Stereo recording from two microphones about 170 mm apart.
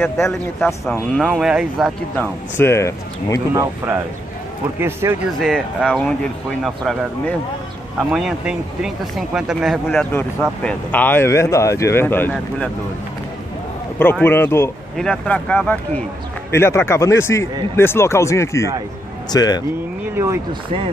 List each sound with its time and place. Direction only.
0.0 s speech: 10° left (ahead or behind)
1.1 s speech: centre (ahead or behind)
2.1 s speech: 10° left (ahead or behind)
3.5 s speech: 15° right (ahead or behind)
5.4 s speech: centre (ahead or behind)
14.2 s speech: 10° left (ahead or behind)